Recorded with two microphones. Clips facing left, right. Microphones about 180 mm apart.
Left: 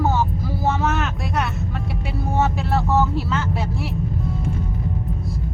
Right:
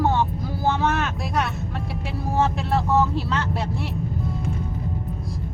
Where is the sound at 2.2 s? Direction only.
Centre (ahead or behind).